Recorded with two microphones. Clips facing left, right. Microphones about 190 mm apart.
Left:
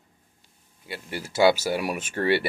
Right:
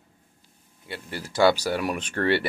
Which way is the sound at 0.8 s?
10° left (ahead or behind).